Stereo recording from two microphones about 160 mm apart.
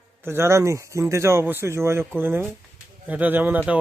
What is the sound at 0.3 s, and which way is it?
Speech, 15° right (ahead or behind).